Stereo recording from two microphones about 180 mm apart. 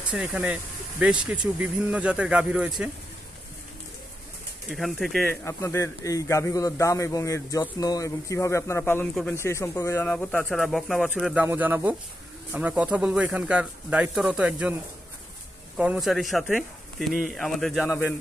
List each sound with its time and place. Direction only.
0.1 s a man's voice: 5° right (ahead or behind)
4.6 s a man's voice: centre (ahead or behind)
5.4 s a man's voice: 15° left (ahead or behind); by 14.8 s 5° right (ahead or behind)
15.8 s a man's voice: 5° right (ahead or behind)